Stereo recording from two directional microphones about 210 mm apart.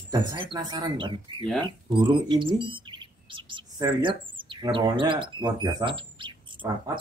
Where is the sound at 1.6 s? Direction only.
20° right (ahead or behind).